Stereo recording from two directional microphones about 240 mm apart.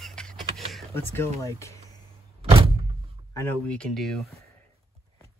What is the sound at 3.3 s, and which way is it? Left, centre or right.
Speech, centre.